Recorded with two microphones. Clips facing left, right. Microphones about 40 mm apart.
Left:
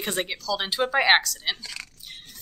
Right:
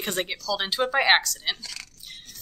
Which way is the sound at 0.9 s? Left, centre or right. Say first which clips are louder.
Left 1 dB; centre.